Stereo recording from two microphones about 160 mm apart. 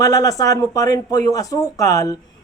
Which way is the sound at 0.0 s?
20° left (ahead or behind).